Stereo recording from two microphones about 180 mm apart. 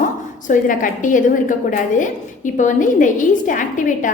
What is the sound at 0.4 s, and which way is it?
A woman's voice, 45° left (ahead or behind).